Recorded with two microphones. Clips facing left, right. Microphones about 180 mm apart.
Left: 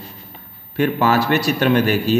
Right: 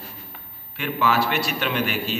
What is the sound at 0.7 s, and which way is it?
A man's voice, 40° left (ahead or behind).